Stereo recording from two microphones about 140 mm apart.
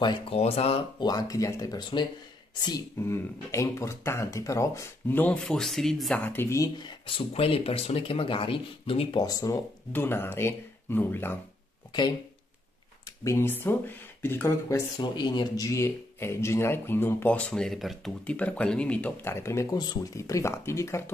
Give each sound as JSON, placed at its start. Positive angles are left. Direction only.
{"t": 0.3, "sound": "speech", "side_deg": 45}
{"t": 3.0, "sound": "speech", "side_deg": 20}
{"t": 6.8, "sound": "speech", "side_deg": 35}
{"t": 13.0, "sound": "speech", "side_deg": 20}
{"t": 15.0, "sound": "speech", "side_deg": 30}